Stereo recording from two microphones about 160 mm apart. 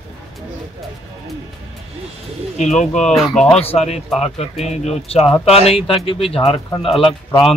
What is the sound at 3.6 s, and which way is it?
Speech, 40° left (ahead or behind).